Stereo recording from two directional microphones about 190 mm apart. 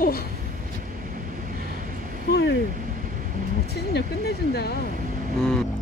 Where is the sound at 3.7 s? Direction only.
60° left (ahead or behind).